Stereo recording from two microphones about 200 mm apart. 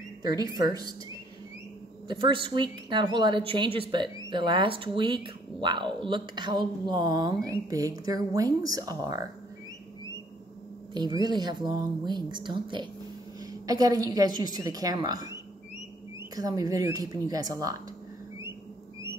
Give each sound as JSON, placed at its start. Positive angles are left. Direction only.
{"t": 0.3, "sound": "speech", "side_deg": -20}
{"t": 2.0, "sound": "speech", "side_deg": -25}
{"t": 10.9, "sound": "speech", "side_deg": -20}